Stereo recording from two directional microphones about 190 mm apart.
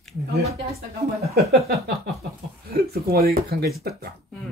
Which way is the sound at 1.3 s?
55° right (ahead or behind).